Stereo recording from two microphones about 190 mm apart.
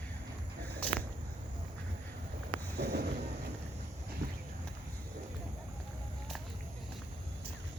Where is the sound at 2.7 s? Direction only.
55° right (ahead or behind).